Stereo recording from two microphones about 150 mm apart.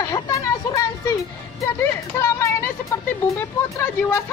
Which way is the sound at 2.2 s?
20° left (ahead or behind).